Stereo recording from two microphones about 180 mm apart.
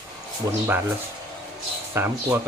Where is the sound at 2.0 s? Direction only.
15° right (ahead or behind).